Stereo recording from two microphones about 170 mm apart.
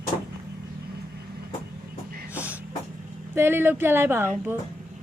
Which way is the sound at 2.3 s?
10° right (ahead or behind).